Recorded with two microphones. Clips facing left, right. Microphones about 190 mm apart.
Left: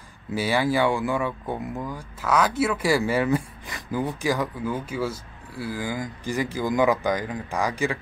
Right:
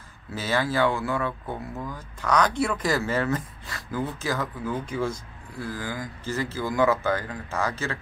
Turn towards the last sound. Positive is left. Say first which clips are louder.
# left 3 dB
turn(degrees=15)  # may be behind; listen again after turning